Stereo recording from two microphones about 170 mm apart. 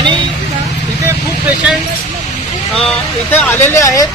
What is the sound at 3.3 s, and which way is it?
Speech, 10° left (ahead or behind).